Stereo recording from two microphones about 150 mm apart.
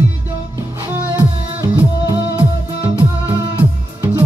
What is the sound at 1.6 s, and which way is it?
Music, 15° right (ahead or behind).